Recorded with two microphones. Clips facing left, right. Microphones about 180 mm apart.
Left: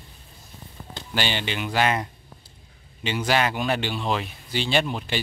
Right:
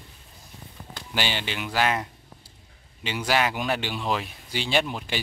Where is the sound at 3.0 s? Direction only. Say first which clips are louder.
Left 2 dB; 5° right (ahead or behind).